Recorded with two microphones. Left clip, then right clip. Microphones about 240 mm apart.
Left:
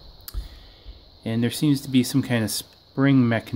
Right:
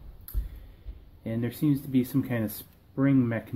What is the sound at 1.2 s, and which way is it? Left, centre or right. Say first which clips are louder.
Speech: left 5 dB; left.